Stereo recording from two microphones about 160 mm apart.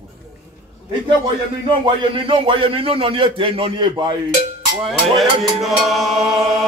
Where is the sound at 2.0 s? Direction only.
35° right (ahead or behind).